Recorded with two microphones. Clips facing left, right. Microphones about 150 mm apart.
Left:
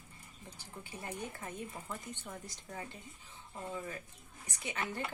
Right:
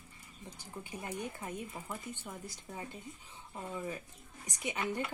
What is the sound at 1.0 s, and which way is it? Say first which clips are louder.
Speech: right 2 dB; 15° right (ahead or behind).